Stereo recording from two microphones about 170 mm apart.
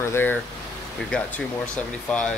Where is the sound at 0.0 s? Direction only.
15° left (ahead or behind).